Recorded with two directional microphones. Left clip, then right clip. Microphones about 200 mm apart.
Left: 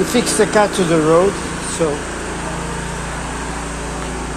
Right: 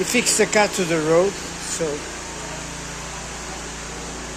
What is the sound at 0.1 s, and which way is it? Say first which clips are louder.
Speech: left 2 dB; 35° right (ahead or behind).